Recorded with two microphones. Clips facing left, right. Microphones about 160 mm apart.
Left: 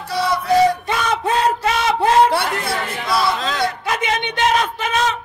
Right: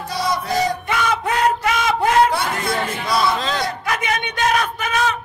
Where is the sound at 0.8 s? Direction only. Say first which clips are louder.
Left 1 dB; 30° left (ahead or behind).